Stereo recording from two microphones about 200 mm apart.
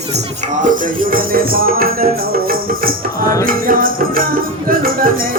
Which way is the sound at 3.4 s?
45° right (ahead or behind).